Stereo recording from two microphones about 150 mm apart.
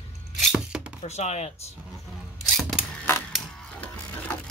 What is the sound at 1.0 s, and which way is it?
Speech, 45° left (ahead or behind).